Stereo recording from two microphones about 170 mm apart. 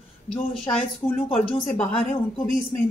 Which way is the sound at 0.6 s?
35° left (ahead or behind).